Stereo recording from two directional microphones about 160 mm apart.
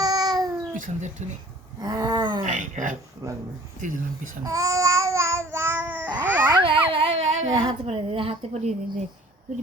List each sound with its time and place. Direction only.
0.0 s babbling: 25° right (ahead or behind)
0.7 s speech: 50° right (ahead or behind)
1.8 s a sound: 25° right (ahead or behind)
2.4 s speech: 50° right (ahead or behind)
3.2 s a sound: 20° right (ahead or behind)
3.8 s speech: 55° right (ahead or behind)
4.4 s babbling: 20° right (ahead or behind)
6.5 s a sound: 35° right (ahead or behind)
7.5 s a woman's voice: 35° right (ahead or behind)